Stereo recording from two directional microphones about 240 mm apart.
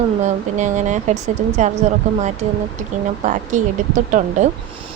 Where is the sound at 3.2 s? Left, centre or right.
Right.